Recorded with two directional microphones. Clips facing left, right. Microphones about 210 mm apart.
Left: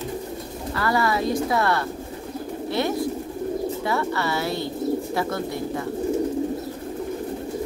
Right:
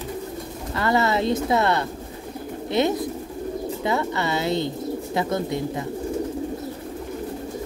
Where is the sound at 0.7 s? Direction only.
20° right (ahead or behind).